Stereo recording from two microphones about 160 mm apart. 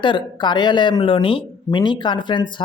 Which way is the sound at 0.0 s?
30° left (ahead or behind).